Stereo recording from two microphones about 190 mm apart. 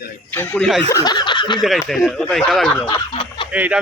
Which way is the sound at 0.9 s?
20° left (ahead or behind).